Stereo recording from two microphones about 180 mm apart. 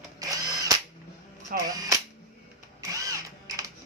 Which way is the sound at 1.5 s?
55° right (ahead or behind).